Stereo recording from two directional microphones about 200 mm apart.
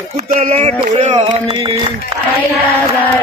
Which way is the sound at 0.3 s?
30° right (ahead or behind).